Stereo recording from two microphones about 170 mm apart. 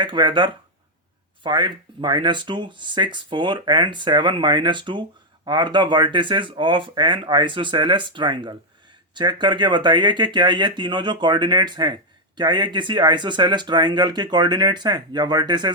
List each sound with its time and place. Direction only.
0.0 s speech: 25° right (ahead or behind)